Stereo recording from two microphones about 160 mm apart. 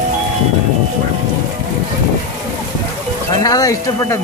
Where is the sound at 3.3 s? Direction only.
20° left (ahead or behind).